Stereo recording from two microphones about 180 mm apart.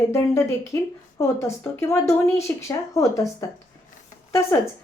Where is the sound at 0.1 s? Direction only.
15° left (ahead or behind).